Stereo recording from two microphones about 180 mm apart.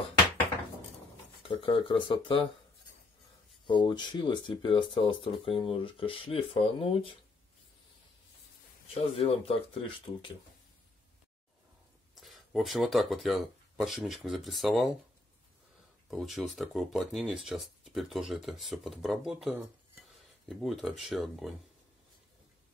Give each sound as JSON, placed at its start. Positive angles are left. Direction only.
{"t": 1.5, "sound": "speech", "side_deg": 30}
{"t": 3.6, "sound": "speech", "side_deg": 25}
{"t": 9.2, "sound": "speech", "side_deg": 30}
{"t": 12.2, "sound": "speech", "side_deg": 0}
{"t": 16.1, "sound": "speech", "side_deg": 0}
{"t": 20.1, "sound": "cutlery", "side_deg": 0}